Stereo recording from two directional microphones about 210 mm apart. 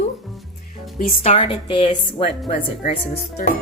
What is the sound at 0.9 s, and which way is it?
A woman's voice, 35° left (ahead or behind).